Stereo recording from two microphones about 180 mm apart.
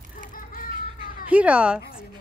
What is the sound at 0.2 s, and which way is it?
Children playing, 50° left (ahead or behind).